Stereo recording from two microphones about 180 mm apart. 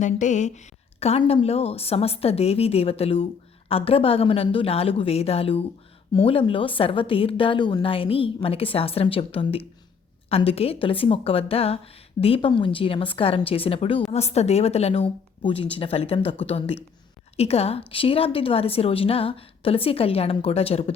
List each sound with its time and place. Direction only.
0.0 s a woman's voice: 45° left (ahead or behind)